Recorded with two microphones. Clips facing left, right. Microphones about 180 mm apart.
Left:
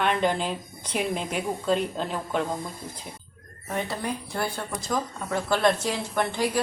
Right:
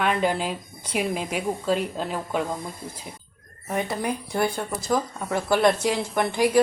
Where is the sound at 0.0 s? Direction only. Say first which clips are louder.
Right 1 dB; 5° right (ahead or behind).